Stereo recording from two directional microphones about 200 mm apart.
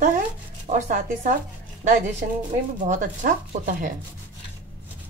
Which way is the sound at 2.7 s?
40° right (ahead or behind).